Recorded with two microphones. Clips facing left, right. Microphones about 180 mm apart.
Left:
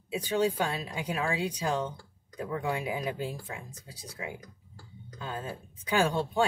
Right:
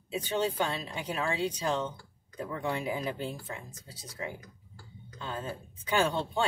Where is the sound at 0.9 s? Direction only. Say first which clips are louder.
Left 1 dB; 10° left (ahead or behind).